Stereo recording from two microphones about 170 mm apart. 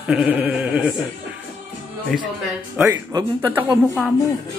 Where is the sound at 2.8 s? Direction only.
20° right (ahead or behind).